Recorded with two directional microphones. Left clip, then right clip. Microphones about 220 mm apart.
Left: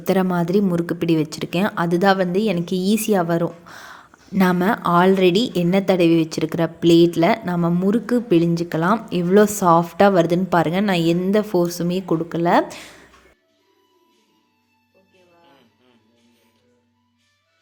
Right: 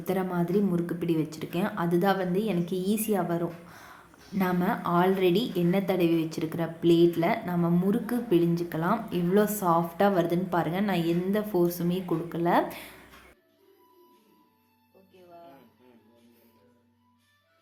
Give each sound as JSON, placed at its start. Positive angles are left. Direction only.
{"t": 0.0, "sound": "a woman's voice", "side_deg": 40}